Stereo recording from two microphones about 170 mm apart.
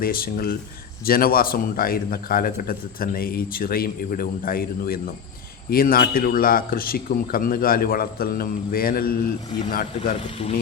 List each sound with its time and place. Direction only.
0.0 s a man's voice: 60° left (ahead or behind)
10.2 s speech: 35° left (ahead or behind)